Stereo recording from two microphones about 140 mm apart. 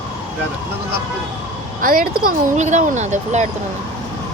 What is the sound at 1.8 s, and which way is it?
Speech, 90° right.